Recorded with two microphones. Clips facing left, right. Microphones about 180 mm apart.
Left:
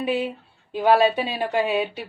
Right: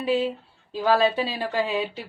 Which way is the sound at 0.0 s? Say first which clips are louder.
Right 1 dB; 15° left (ahead or behind).